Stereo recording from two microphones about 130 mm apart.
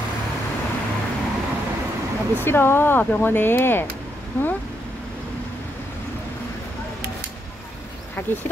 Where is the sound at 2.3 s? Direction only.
15° left (ahead or behind).